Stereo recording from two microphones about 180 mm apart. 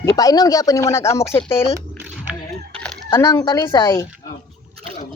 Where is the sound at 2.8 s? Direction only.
15° left (ahead or behind).